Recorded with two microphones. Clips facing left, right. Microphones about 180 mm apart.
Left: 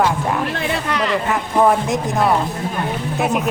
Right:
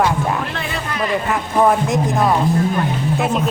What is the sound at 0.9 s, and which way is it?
Speech, 75° left (ahead or behind).